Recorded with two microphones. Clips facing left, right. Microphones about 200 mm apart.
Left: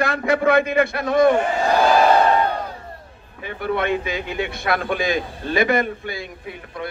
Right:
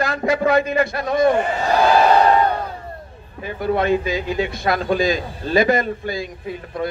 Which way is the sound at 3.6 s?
60° left (ahead or behind).